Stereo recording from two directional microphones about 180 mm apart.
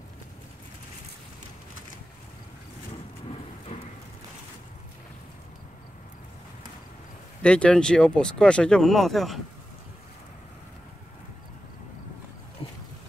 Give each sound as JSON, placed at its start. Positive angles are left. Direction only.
{"t": 7.4, "sound": "speech", "side_deg": 5}
{"t": 12.6, "sound": "boat", "side_deg": 30}